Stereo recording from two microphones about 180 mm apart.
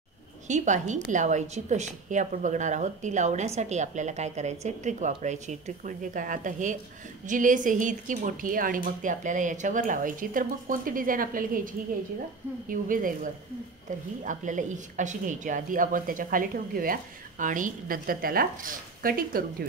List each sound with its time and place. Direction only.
0.5 s a woman's voice: 40° right (ahead or behind)